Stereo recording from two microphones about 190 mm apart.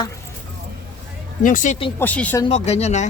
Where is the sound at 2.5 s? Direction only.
35° left (ahead or behind).